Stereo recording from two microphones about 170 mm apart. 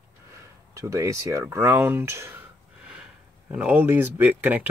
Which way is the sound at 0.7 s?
15° right (ahead or behind).